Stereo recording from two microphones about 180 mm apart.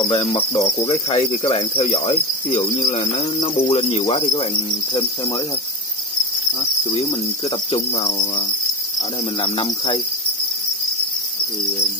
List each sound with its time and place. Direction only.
0.0 s cricket: 30° left (ahead or behind)
6.6 s insect: 30° left (ahead or behind)
7.4 s cricket: 35° left (ahead or behind)
9.4 s cricket: 30° left (ahead or behind)